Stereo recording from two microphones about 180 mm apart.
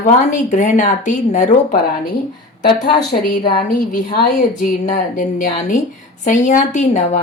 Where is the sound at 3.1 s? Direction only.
55° left (ahead or behind).